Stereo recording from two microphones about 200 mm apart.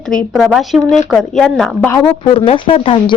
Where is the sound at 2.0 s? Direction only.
25° left (ahead or behind).